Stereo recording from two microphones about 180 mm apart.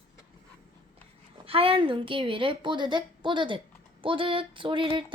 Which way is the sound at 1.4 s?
30° right (ahead or behind).